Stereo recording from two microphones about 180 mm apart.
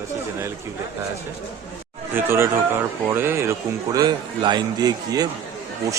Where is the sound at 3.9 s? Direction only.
25° right (ahead or behind).